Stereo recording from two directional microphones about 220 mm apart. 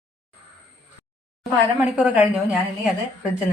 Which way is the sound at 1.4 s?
5° right (ahead or behind).